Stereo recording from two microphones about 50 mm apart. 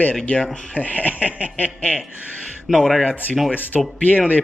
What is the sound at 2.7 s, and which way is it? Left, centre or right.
Speech, centre.